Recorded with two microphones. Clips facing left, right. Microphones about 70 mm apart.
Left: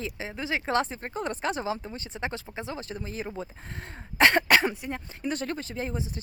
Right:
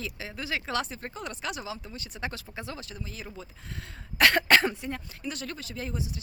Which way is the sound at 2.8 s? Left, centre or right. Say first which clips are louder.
Left 6 dB; left.